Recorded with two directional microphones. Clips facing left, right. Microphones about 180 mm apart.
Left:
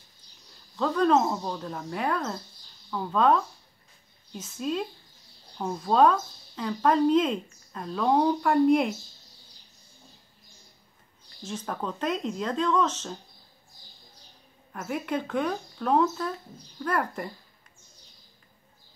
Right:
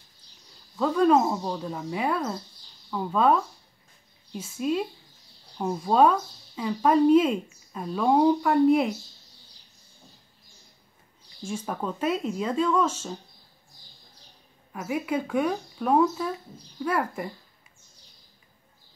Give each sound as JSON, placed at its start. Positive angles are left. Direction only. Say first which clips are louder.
{"t": 0.7, "sound": "speech", "louder": "right 2 dB", "side_deg": -5}
{"t": 11.4, "sound": "speech", "louder": "right 2 dB", "side_deg": -10}
{"t": 14.7, "sound": "speech", "louder": "right 2 dB", "side_deg": -5}